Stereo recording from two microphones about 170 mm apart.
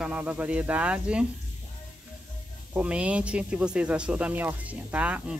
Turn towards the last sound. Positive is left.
turn(degrees=-10)  # may be behind; listen again after turning